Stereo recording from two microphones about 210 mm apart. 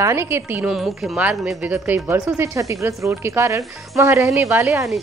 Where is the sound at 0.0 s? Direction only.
15° right (ahead or behind).